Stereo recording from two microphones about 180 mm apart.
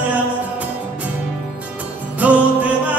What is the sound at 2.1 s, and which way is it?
Music, 10° right (ahead or behind).